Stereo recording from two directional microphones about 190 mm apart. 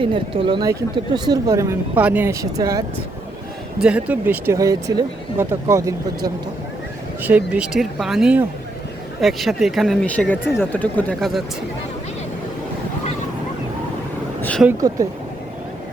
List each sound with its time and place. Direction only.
0.0 s speech: 25° right (ahead or behind)
3.8 s speech: 5° right (ahead or behind)
14.8 s speech: 20° right (ahead or behind)